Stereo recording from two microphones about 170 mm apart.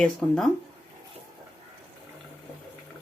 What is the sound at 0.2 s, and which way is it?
Speech, centre (ahead or behind).